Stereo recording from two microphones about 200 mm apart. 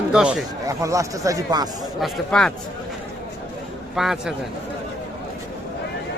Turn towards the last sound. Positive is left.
turn(degrees=0)  # may be behind; listen again after turning